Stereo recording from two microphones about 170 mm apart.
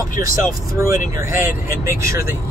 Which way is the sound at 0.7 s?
15° right (ahead or behind).